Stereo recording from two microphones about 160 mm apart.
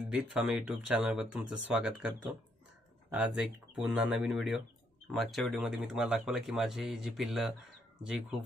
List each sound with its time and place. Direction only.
0.1 s speech: 5° right (ahead or behind)